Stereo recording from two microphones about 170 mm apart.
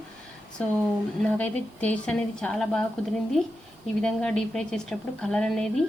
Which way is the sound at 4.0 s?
5° left (ahead or behind).